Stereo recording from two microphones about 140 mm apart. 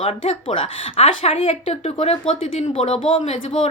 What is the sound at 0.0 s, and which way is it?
A woman's voice, 40° left (ahead or behind).